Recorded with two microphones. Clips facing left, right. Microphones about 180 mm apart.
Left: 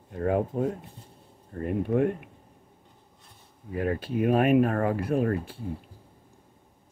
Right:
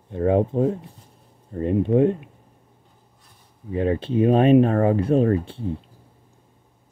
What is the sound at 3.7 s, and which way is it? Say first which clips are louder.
Speech: right 6 dB; 25° right (ahead or behind).